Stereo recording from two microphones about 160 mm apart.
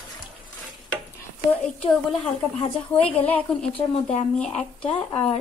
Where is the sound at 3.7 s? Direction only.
35° left (ahead or behind).